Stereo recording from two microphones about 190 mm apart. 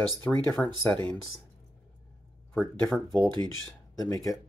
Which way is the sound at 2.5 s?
10° left (ahead or behind).